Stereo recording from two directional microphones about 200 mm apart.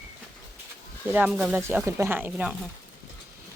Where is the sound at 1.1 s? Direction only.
5° right (ahead or behind).